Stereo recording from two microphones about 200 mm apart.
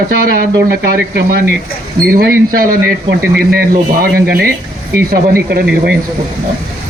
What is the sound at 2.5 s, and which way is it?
Speech, 45° right (ahead or behind).